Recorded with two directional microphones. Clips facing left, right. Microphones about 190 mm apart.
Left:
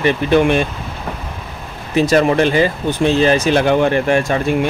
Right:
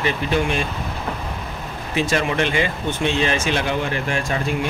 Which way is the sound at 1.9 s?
40° left (ahead or behind).